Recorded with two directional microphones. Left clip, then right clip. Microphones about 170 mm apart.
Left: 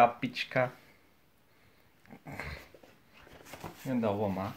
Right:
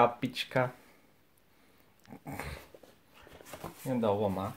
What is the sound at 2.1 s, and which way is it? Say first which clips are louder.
Dog: even; 50° right (ahead or behind).